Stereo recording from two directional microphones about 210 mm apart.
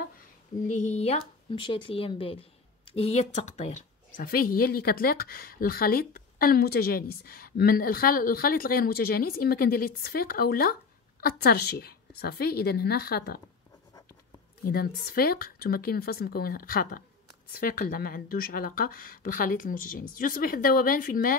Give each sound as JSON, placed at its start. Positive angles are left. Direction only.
{"t": 0.7, "sound": "a woman's voice", "side_deg": 35}
{"t": 14.6, "sound": "a woman's voice", "side_deg": 45}